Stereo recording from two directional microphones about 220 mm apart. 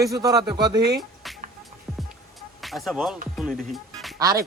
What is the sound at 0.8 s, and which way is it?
Speech, 45° right (ahead or behind).